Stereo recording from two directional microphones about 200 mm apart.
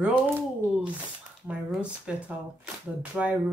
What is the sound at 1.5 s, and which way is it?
Speech, 5° right (ahead or behind).